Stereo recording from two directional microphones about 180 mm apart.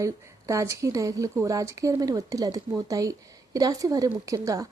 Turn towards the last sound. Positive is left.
turn(degrees=-15)  # may be behind; listen again after turning